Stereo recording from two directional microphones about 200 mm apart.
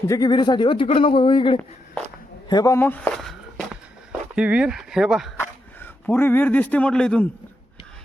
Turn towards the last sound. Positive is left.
turn(degrees=5)  # may be behind; listen again after turning